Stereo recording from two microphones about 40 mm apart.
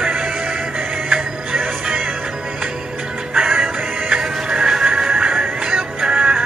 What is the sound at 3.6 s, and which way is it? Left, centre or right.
Music, centre.